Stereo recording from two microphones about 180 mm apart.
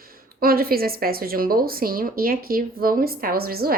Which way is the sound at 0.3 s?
55° right (ahead or behind).